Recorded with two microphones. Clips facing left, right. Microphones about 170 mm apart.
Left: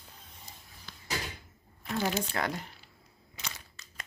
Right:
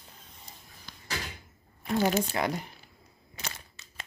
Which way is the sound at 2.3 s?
15° right (ahead or behind).